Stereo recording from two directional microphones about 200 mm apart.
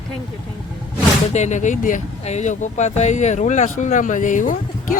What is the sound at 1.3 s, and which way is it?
Speech, 35° left (ahead or behind).